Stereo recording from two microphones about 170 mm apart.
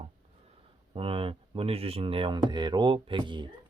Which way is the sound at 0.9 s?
35° right (ahead or behind).